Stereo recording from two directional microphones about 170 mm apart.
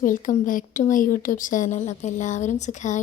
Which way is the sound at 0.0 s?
50° left (ahead or behind).